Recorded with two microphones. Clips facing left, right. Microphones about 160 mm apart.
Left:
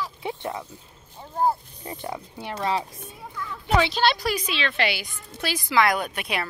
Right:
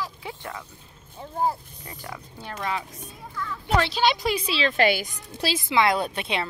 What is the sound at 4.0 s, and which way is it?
A woman's voice, 20° right (ahead or behind).